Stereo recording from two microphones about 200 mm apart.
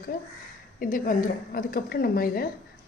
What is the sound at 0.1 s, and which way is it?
A woman's voice, 45° left (ahead or behind).